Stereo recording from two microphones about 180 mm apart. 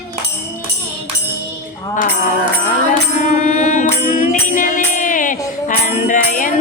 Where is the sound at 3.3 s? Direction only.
45° left (ahead or behind).